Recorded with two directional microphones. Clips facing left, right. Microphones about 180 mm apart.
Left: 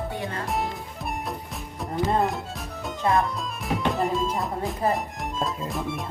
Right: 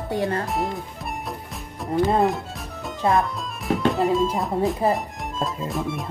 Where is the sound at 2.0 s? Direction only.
Centre (ahead or behind).